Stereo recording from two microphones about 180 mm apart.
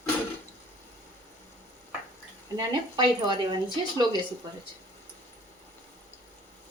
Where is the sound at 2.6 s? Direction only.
25° right (ahead or behind).